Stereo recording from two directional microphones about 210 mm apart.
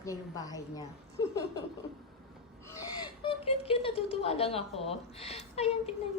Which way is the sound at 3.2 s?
25° left (ahead or behind).